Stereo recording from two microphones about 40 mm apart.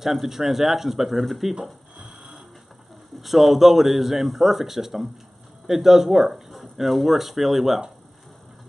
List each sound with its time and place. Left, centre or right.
0.0 s speech: centre
1.6 s a sound: right
3.2 s a man's voice: centre